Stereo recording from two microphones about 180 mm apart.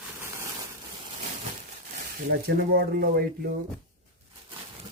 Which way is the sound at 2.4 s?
60° right (ahead or behind).